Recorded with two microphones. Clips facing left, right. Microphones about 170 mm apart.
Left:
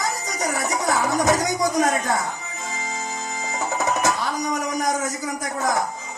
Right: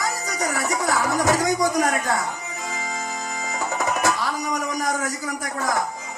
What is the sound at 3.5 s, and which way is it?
Music, 20° left (ahead or behind).